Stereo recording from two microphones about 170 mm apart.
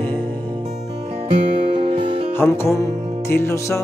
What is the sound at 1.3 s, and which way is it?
Music, 30° right (ahead or behind).